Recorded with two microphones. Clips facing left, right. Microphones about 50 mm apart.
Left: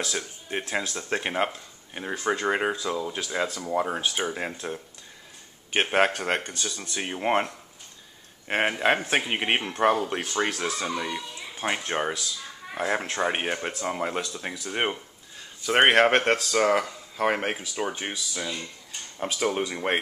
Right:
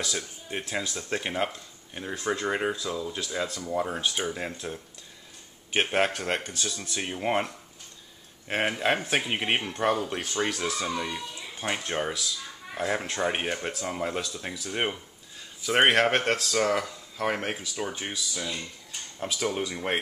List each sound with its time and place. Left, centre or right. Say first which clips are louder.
0.2 s speech: left 3 dB; centre